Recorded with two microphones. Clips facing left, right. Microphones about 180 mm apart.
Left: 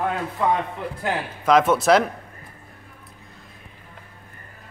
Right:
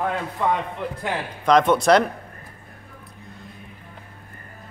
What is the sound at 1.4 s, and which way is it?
Speech, 5° left (ahead or behind).